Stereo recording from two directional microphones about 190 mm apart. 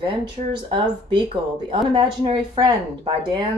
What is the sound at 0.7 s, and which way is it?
Speech, 25° right (ahead or behind).